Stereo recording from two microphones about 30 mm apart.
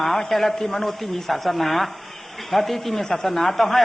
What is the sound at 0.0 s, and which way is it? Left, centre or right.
A man's voice, centre.